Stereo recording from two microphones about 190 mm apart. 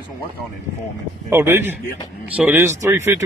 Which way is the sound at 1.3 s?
15° right (ahead or behind).